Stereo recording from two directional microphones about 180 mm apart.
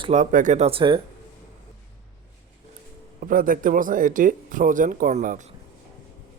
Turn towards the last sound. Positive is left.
turn(degrees=-45)  # may be behind; listen again after turning